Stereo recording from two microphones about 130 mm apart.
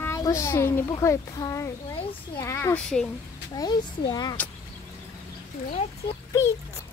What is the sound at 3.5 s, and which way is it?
Speech, 30° left (ahead or behind).